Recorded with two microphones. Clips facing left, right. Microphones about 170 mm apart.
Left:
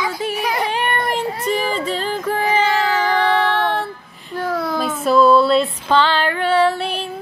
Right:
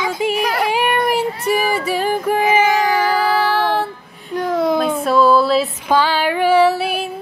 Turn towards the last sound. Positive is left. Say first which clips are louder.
# right 3 dB
turn(degrees=-10)  # may be behind; listen again after turning